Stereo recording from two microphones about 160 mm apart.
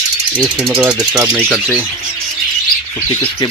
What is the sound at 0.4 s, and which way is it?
Speech, 5° right (ahead or behind).